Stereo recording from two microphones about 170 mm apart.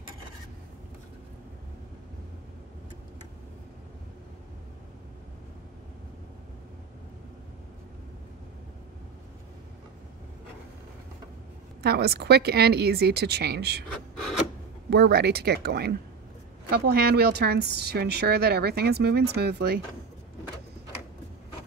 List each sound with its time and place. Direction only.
11.8 s a woman's voice: 70° right (ahead or behind)
14.9 s a woman's voice: 70° right (ahead or behind)